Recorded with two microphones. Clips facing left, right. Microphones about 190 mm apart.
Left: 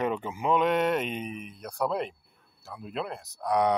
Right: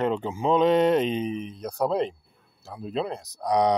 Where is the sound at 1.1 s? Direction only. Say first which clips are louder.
Right 7 dB; 5° left (ahead or behind).